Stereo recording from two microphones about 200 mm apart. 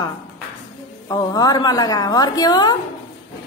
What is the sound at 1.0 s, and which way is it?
A woman's voice, 20° left (ahead or behind).